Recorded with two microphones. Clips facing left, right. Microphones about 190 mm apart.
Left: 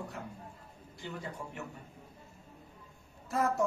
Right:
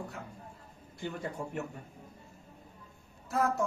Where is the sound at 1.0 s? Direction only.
55° right (ahead or behind).